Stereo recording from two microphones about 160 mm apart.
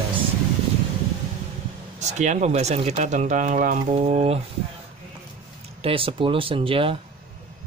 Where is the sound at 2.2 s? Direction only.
45° right (ahead or behind).